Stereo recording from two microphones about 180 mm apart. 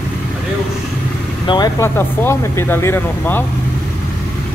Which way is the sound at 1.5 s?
20° left (ahead or behind).